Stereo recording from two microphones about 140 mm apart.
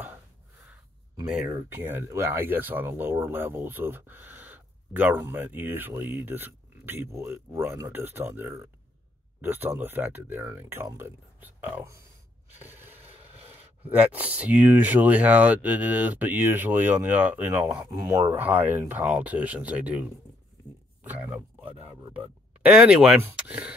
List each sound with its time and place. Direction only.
1.7 s speech: 15° right (ahead or behind)